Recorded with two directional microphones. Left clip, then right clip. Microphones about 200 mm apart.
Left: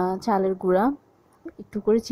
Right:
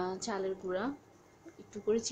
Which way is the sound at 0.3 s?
40° left (ahead or behind).